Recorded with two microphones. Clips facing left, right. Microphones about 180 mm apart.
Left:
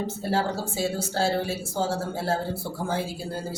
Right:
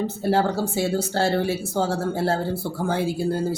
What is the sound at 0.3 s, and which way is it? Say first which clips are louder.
Speech: right 6 dB; 60° right (ahead or behind).